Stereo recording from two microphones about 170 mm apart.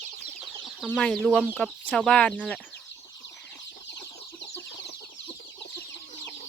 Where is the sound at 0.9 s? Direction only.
5° left (ahead or behind).